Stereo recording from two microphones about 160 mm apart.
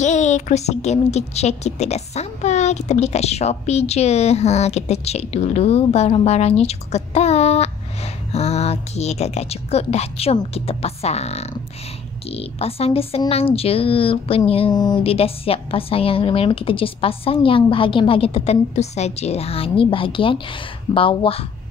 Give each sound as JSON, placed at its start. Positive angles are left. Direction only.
{"t": 0.0, "sound": "a woman's voice", "side_deg": 45}
{"t": 15.1, "sound": "a woman's voice", "side_deg": 35}